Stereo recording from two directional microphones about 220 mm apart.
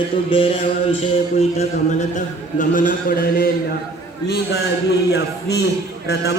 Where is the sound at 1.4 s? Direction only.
30° left (ahead or behind).